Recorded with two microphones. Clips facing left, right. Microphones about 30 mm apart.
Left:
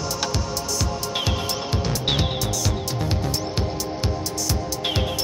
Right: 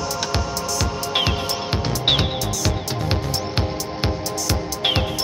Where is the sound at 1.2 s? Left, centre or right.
Right.